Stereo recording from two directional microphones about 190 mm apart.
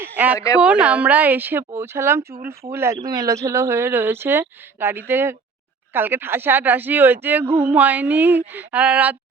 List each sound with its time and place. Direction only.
0.3 s speech: 15° left (ahead or behind)
0.6 s speech: 5° right (ahead or behind)